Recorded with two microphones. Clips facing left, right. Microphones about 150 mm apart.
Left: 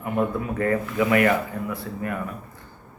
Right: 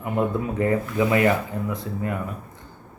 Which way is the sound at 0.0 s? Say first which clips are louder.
Right 1 dB; 20° right (ahead or behind).